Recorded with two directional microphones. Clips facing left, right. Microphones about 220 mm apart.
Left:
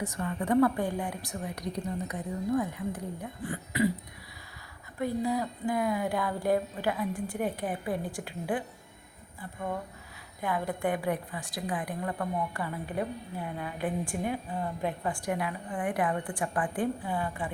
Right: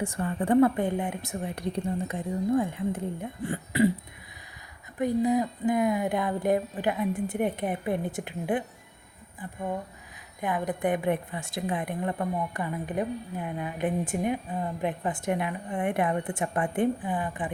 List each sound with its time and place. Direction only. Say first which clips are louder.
0.0 s a woman's voice: right 3 dB; 30° right (ahead or behind)
4.9 s a woman's voice: right 5 dB; 20° right (ahead or behind)
10.4 s a woman's voice: right 2 dB; 20° right (ahead or behind)